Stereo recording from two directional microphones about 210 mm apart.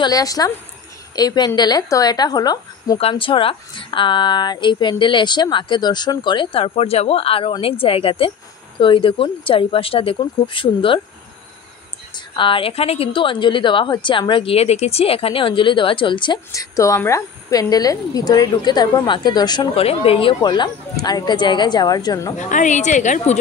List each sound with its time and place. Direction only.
0.0 s a woman's voice: 15° left (ahead or behind)
12.4 s a woman's voice: 25° left (ahead or behind)
22.4 s a woman's voice: 35° left (ahead or behind)